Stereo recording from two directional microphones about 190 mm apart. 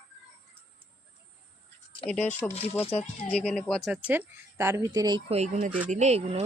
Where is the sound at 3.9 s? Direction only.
10° right (ahead or behind); by 6.4 s 35° right (ahead or behind).